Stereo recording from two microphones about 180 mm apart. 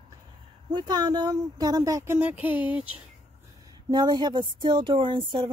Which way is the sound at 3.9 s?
25° right (ahead or behind).